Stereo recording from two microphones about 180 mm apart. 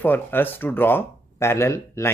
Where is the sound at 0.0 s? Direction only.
10° left (ahead or behind).